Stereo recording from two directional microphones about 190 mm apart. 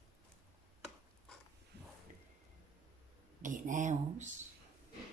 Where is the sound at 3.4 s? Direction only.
40° right (ahead or behind).